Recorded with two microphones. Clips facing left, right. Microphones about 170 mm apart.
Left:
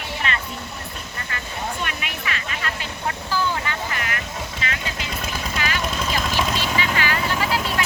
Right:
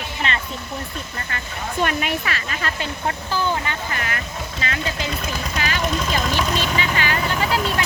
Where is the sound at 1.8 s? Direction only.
40° right (ahead or behind).